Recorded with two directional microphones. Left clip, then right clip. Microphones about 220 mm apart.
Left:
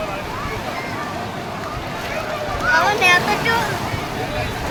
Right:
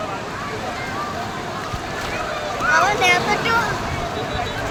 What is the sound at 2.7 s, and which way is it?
Boat, 5° right (ahead or behind).